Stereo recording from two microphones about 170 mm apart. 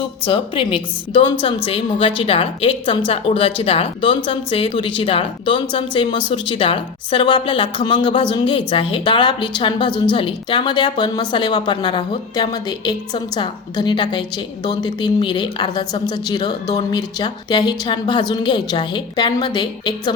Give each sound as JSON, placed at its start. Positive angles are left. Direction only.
{"t": 0.3, "sound": "a woman's voice", "side_deg": 30}